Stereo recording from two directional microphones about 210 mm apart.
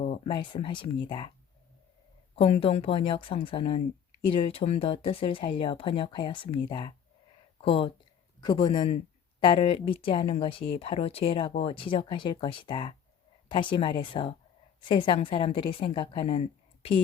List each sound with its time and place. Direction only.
0.0 s speech: 25° left (ahead or behind)
2.3 s speech: 25° left (ahead or behind)